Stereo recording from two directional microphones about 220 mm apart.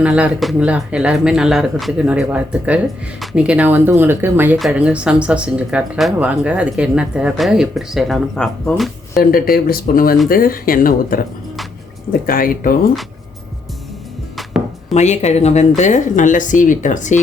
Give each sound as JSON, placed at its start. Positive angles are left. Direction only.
{"t": 0.0, "sound": "speech", "side_deg": -5}
{"t": 9.1, "sound": "speech", "side_deg": 40}
{"t": 12.2, "sound": "speech", "side_deg": 40}
{"t": 14.3, "sound": "music", "side_deg": 0}
{"t": 14.9, "sound": "speech", "side_deg": 30}